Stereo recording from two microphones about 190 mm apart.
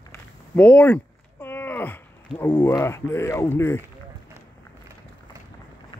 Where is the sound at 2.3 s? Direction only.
10° left (ahead or behind).